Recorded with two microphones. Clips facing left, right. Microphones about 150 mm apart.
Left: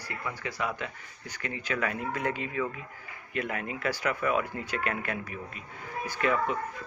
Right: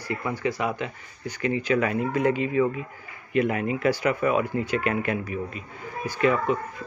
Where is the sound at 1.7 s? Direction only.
10° right (ahead or behind).